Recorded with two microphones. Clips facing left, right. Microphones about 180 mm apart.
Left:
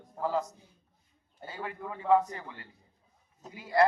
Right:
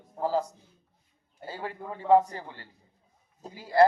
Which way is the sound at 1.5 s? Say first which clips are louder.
Right 2 dB; 30° right (ahead or behind).